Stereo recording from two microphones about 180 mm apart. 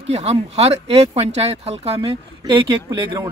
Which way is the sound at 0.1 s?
35° right (ahead or behind).